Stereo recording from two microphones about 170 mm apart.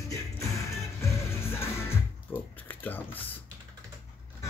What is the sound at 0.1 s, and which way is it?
Music, 20° left (ahead or behind).